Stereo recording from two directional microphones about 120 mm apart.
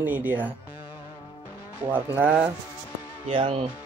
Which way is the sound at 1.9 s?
15° right (ahead or behind).